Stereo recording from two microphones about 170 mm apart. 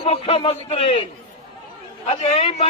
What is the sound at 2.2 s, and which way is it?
Speech, 35° left (ahead or behind).